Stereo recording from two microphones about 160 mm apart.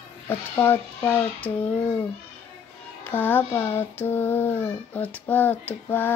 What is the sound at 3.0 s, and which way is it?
Child singing, 10° left (ahead or behind).